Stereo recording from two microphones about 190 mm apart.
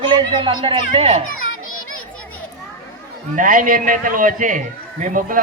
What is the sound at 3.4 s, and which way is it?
A man's voice, 45° right (ahead or behind).